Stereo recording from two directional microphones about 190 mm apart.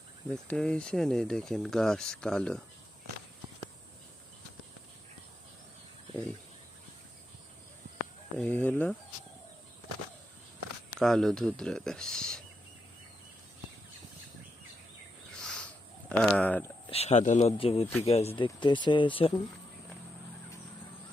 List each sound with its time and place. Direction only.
0.3 s speech: 5° left (ahead or behind)
8.4 s speech: 10° left (ahead or behind)
11.0 s speech: centre (ahead or behind)
15.3 s a sound: 5° left (ahead or behind)
16.9 s speech: 35° left (ahead or behind)